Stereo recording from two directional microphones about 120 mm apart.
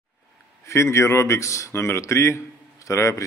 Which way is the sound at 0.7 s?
25° left (ahead or behind).